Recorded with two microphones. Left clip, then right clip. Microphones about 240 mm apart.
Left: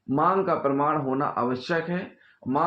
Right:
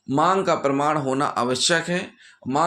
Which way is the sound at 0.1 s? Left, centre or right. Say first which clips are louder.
Right 3 dB; right.